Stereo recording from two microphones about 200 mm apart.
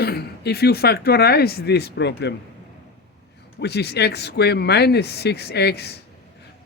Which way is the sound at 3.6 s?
55° left (ahead or behind).